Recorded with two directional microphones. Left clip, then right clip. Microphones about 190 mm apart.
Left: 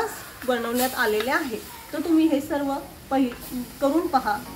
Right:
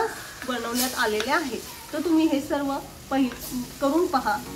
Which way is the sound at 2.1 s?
25° left (ahead or behind).